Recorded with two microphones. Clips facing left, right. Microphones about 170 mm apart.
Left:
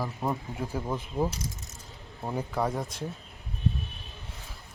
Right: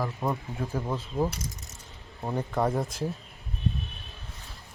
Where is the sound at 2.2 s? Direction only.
Centre (ahead or behind).